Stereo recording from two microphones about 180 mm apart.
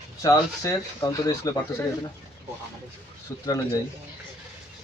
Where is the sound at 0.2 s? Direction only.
15° left (ahead or behind).